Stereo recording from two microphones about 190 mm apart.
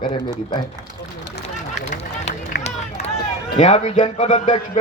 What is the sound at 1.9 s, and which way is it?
Run, 35° left (ahead or behind).